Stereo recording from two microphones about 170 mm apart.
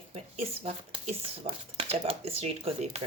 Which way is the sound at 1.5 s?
35° right (ahead or behind).